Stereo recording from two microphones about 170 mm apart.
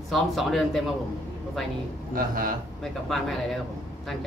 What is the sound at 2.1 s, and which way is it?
Speech, 55° right (ahead or behind).